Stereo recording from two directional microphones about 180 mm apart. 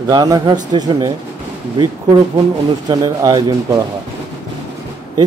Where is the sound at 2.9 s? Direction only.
20° right (ahead or behind).